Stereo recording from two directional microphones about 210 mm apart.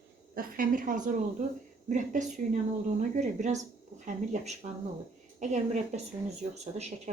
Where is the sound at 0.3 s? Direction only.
40° right (ahead or behind).